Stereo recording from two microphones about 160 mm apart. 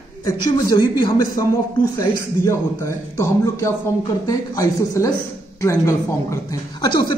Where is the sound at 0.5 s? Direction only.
30° left (ahead or behind).